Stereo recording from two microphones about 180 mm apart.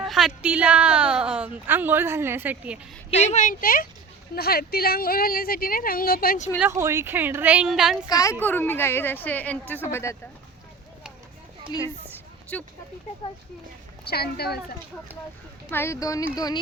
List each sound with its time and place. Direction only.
0.0 s a woman's voice: centre (ahead or behind)
3.1 s a woman's voice: 40° left (ahead or behind)
6.6 s a woman's voice: 15° right (ahead or behind)
8.0 s a woman's voice: 20° left (ahead or behind)
12.5 s a woman's voice: 10° left (ahead or behind)
14.1 s a woman's voice: 60° left (ahead or behind)
15.7 s a woman's voice: 15° left (ahead or behind)